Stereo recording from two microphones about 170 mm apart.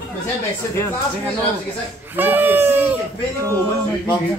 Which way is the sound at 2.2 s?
10° right (ahead or behind).